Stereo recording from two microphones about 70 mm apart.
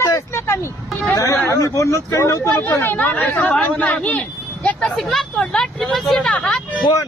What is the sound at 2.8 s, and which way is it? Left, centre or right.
Speech, left.